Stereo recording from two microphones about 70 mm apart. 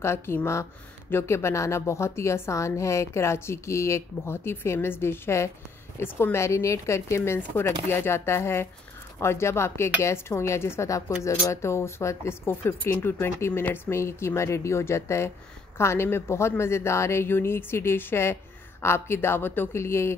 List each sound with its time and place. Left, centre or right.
0.0 s a woman's voice: left